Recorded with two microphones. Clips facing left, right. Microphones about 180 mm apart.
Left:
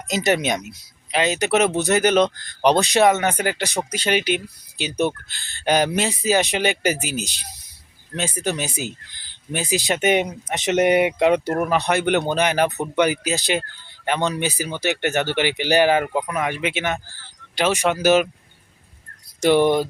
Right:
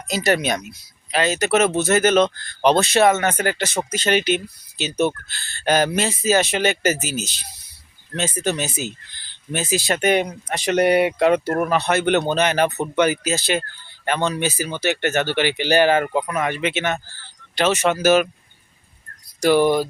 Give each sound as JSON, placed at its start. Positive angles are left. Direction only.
{"t": 0.1, "sound": "speech", "side_deg": 20}
{"t": 19.4, "sound": "speech", "side_deg": 20}